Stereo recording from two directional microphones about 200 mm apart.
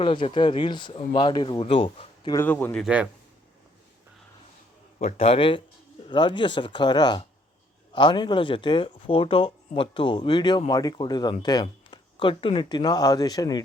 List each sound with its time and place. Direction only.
0.0 s speech: 25° left (ahead or behind)
2.3 s speech: 10° left (ahead or behind)
2.8 s a man's voice: 5° right (ahead or behind)
4.9 s speech: 30° left (ahead or behind)